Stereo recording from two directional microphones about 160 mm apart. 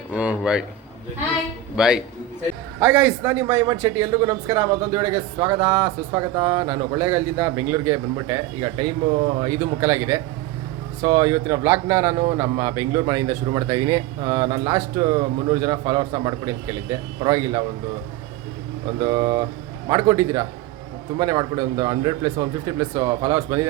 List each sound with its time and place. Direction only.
0.1 s speech: 5° right (ahead or behind)
1.7 s speech: 5° right (ahead or behind); by 17.6 s 20° right (ahead or behind)
18.9 s speech: 25° right (ahead or behind)